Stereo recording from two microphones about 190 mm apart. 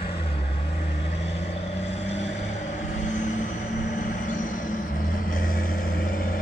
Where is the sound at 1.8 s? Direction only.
35° left (ahead or behind).